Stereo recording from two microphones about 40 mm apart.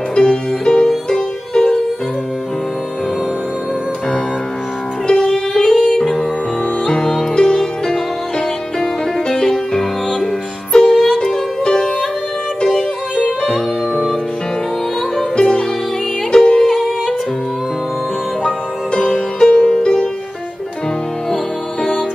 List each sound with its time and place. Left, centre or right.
0.1 s music: centre
5.1 s music: centre
15.1 s music: centre
18.4 s music: centre